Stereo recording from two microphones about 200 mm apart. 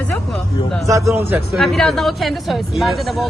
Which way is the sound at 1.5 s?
Centre (ahead or behind).